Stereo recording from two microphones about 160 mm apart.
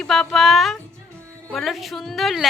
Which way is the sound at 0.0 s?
Centre (ahead or behind).